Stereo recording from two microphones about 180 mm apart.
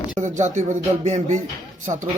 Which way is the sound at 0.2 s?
40° right (ahead or behind).